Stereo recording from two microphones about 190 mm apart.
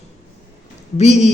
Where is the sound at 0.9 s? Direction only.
35° left (ahead or behind).